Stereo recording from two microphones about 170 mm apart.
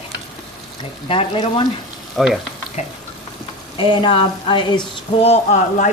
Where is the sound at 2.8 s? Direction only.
40° left (ahead or behind).